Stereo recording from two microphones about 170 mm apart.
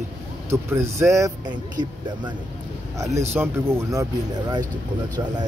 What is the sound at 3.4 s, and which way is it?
Speech, 15° right (ahead or behind).